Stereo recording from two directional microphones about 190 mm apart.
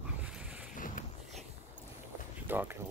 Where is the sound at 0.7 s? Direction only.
45° left (ahead or behind).